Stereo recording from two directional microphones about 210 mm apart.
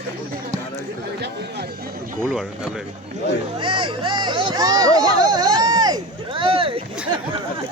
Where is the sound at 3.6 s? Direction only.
25° right (ahead or behind).